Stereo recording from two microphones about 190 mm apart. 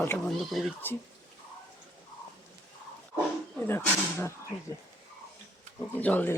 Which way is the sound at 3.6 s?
10° left (ahead or behind).